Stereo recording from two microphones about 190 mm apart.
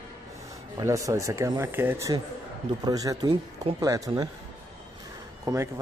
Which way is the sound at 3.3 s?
30° right (ahead or behind).